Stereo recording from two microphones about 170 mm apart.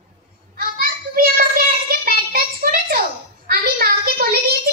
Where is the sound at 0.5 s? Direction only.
60° right (ahead or behind).